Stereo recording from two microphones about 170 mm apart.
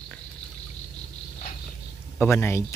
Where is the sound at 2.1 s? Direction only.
15° left (ahead or behind).